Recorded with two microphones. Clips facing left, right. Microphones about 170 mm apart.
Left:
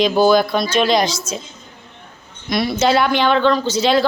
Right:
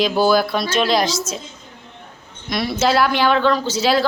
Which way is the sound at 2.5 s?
Centre (ahead or behind).